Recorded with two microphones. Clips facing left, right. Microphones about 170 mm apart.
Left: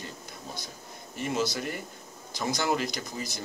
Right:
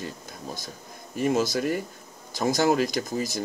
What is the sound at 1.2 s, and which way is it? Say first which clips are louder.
Speech: right 6 dB; 50° right (ahead or behind).